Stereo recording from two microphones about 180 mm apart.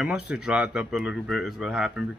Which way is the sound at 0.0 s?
5° right (ahead or behind).